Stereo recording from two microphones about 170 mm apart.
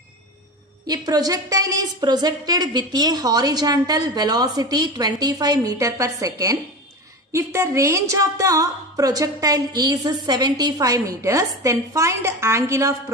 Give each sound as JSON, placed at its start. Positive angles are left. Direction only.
{"t": 0.8, "sound": "a woman's voice", "side_deg": -20}